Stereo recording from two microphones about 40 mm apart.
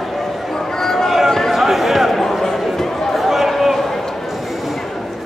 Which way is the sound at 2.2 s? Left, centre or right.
Centre.